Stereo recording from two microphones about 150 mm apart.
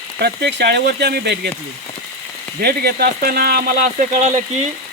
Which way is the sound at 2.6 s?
90° right.